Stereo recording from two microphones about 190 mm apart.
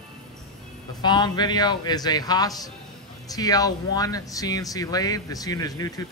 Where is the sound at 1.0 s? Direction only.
20° left (ahead or behind).